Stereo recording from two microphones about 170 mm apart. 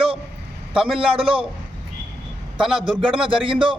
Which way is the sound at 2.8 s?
30° right (ahead or behind).